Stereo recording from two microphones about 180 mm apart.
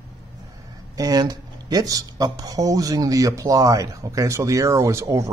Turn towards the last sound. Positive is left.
turn(degrees=-15)  # may be behind; listen again after turning